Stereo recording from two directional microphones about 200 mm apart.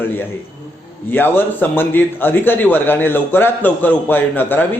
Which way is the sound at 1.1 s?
10° left (ahead or behind).